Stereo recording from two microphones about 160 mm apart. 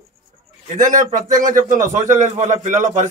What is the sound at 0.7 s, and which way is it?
A man's voice, 55° right (ahead or behind).